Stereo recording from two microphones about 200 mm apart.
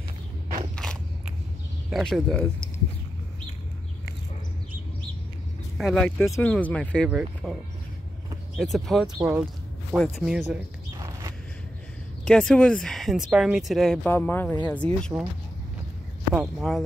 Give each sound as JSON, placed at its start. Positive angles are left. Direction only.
{"t": 1.9, "sound": "speech", "side_deg": 0}
{"t": 5.8, "sound": "speech", "side_deg": 5}
{"t": 7.1, "sound": "speech", "side_deg": -5}
{"t": 8.5, "sound": "speech", "side_deg": 0}
{"t": 9.2, "sound": "speech", "side_deg": -10}
{"t": 9.9, "sound": "speech", "side_deg": 0}
{"t": 11.0, "sound": "a sound", "side_deg": -15}
{"t": 12.3, "sound": "speech", "side_deg": 5}
{"t": 16.3, "sound": "speech", "side_deg": 0}